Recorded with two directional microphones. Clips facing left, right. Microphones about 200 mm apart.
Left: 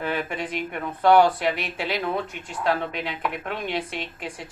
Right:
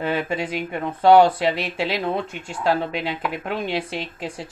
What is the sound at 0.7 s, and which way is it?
Speech, 30° right (ahead or behind).